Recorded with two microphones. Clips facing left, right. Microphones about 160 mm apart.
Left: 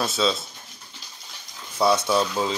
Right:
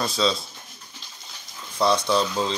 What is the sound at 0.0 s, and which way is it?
Speech, 5° left (ahead or behind).